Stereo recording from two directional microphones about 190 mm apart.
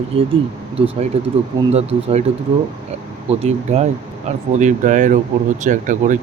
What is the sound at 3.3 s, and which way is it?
Speech, 35° right (ahead or behind).